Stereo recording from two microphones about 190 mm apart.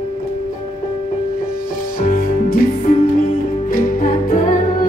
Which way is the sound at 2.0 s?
45° left (ahead or behind).